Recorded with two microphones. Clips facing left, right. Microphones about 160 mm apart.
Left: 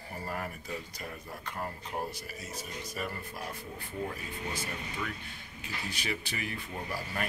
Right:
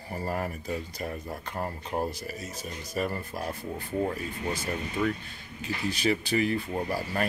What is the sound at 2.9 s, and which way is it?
Speech, 35° right (ahead or behind).